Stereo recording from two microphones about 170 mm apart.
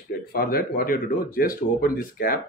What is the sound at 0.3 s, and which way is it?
Speech, 60° left (ahead or behind).